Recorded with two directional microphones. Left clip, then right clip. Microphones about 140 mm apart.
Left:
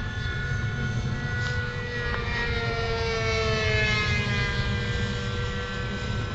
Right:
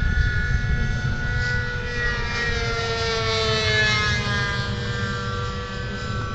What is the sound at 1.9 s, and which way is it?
Vehicle, 25° right (ahead or behind).